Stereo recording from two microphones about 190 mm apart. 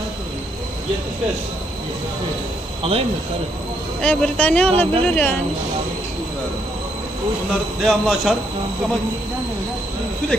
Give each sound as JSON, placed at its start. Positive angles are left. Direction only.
{"t": 2.8, "sound": "speech", "side_deg": -30}
{"t": 4.0, "sound": "speech", "side_deg": 5}
{"t": 7.8, "sound": "speech", "side_deg": 0}